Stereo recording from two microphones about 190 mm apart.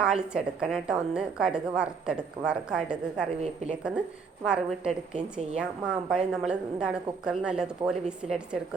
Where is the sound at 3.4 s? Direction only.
35° right (ahead or behind).